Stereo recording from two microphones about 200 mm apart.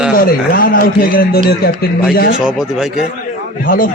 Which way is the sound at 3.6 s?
45° left (ahead or behind).